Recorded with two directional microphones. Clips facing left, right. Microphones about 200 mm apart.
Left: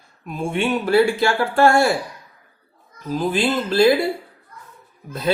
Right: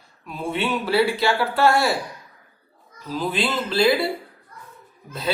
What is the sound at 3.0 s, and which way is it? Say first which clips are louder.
Speech: left 4 dB; 50° left (ahead or behind).